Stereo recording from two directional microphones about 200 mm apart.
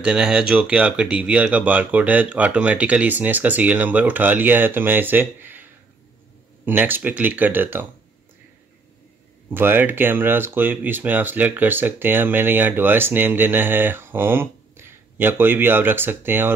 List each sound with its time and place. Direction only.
0.0 s speech: 5° right (ahead or behind)
9.5 s speech: 10° right (ahead or behind)